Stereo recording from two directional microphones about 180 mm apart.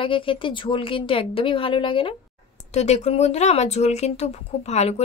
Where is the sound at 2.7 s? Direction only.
40° left (ahead or behind).